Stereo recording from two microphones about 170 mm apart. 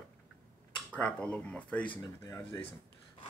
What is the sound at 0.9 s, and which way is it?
Speech, 5° left (ahead or behind).